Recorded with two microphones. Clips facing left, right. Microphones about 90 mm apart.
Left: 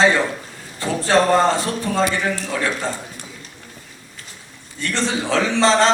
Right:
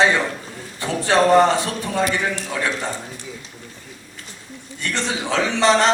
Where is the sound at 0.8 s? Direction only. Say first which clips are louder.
Left 1 dB; 15° right (ahead or behind).